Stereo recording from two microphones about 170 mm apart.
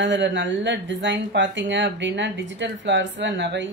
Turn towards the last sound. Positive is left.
turn(degrees=-90)